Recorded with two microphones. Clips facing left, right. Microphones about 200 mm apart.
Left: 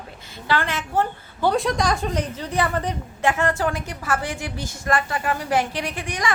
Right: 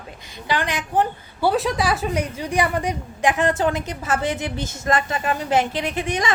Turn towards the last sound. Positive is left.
turn(degrees=-20)  # may be behind; listen again after turning